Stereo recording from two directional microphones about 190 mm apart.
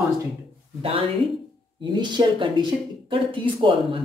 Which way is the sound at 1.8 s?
25° right (ahead or behind).